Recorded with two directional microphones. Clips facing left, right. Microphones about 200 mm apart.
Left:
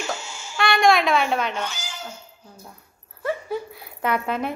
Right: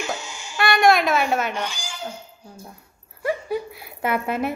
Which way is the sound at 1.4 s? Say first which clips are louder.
Right 1 dB; 15° right (ahead or behind).